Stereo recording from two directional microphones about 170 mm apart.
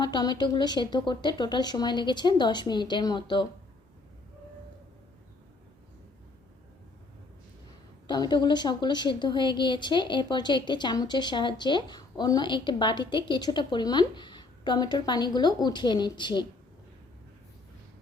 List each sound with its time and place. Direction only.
0.0 s speech: 25° left (ahead or behind)
8.0 s speech: 25° left (ahead or behind)